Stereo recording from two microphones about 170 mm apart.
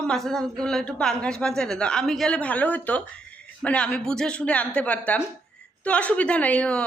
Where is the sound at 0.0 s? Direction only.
5° left (ahead or behind).